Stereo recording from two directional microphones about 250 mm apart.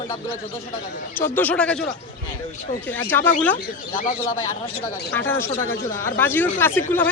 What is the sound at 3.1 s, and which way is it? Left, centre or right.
Speech, centre.